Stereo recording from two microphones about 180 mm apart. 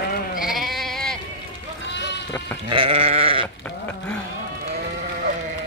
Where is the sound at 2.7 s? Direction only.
30° right (ahead or behind).